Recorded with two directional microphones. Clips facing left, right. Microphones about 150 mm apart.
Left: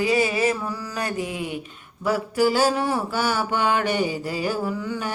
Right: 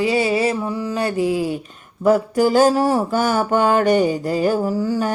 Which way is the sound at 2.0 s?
45° right (ahead or behind).